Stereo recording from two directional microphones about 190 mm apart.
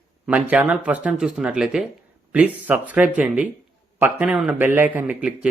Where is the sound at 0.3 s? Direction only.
10° right (ahead or behind).